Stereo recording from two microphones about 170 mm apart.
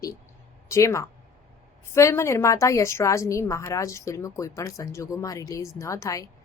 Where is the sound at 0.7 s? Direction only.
20° left (ahead or behind).